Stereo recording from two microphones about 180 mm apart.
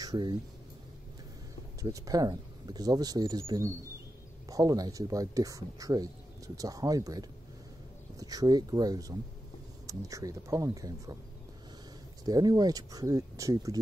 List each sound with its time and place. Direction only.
0.0 s speech: 25° right (ahead or behind)
1.8 s speech: 20° right (ahead or behind)
12.3 s speech: 20° right (ahead or behind)